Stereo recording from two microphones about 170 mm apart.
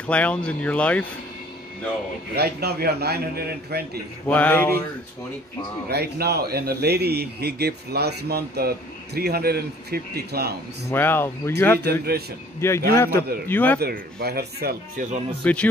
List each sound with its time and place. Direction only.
0.0 s speech: 10° left (ahead or behind)
2.3 s a man's voice: 70° right (ahead or behind)
4.3 s speech: 10° left (ahead or behind)
5.9 s a man's voice: 70° right (ahead or behind)
10.9 s speech: 15° left (ahead or behind)
11.8 s a man's voice: 70° right (ahead or behind)
12.5 s speech: 15° left (ahead or behind)
13.7 s a man's voice: 65° right (ahead or behind)
15.4 s speech: 10° left (ahead or behind)